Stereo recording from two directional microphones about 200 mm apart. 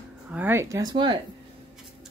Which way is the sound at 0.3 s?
10° right (ahead or behind).